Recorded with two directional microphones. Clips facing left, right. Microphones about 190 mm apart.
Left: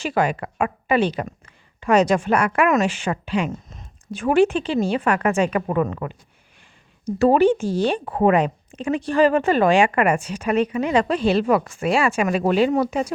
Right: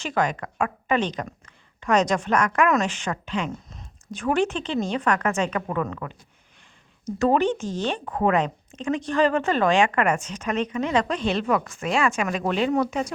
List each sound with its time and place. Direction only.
0.0 s speech: 10° left (ahead or behind)
7.2 s speech: 10° left (ahead or behind)